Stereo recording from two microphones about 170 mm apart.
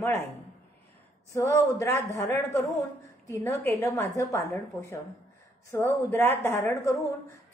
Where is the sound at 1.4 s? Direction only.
20° left (ahead or behind).